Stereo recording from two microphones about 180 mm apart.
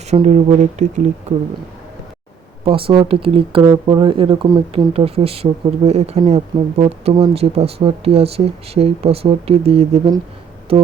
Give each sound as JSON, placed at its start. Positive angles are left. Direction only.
{"t": 0.1, "sound": "speech", "side_deg": -40}
{"t": 2.6, "sound": "speech", "side_deg": -30}